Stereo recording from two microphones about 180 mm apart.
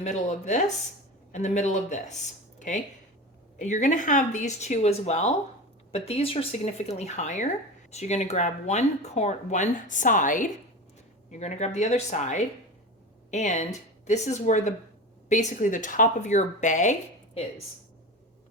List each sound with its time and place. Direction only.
0.0 s speech: 40° left (ahead or behind)